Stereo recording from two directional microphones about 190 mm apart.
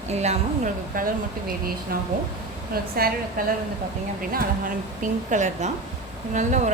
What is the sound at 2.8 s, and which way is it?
Speech, 55° right (ahead or behind).